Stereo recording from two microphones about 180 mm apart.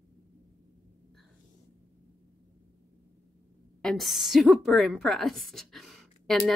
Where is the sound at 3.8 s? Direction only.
Centre (ahead or behind).